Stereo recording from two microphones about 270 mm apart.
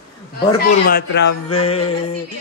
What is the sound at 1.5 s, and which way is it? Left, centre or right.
Speech, left.